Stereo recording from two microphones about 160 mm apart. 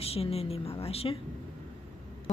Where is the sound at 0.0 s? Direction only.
40° left (ahead or behind).